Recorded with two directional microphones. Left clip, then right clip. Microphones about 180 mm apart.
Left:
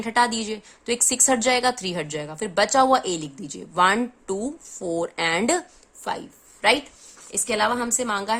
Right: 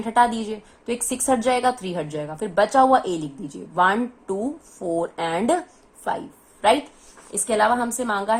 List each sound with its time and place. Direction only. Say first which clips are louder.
0.0 s a woman's voice: right 2 dB; 40° left (ahead or behind)